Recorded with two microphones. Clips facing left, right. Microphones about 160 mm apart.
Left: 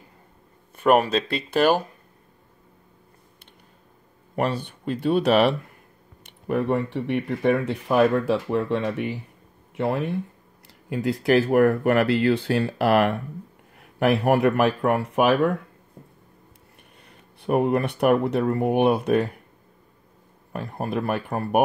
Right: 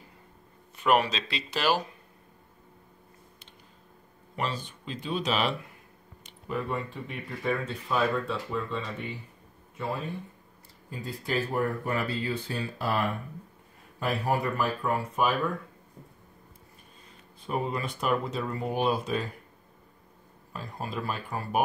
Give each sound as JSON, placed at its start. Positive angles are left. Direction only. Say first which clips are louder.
{"t": 0.7, "sound": "speech", "louder": "left 6 dB", "side_deg": 50}
{"t": 4.4, "sound": "speech", "louder": "left 8 dB", "side_deg": 60}
{"t": 17.4, "sound": "speech", "louder": "left 10 dB", "side_deg": 65}
{"t": 20.5, "sound": "speech", "louder": "left 8 dB", "side_deg": 60}